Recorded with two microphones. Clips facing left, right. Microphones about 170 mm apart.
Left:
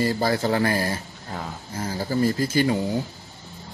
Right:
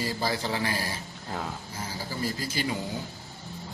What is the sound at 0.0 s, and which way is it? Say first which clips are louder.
Speech: left 7 dB; 50° left (ahead or behind).